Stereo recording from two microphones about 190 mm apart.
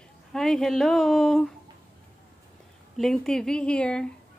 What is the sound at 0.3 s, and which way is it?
Speech, centre (ahead or behind).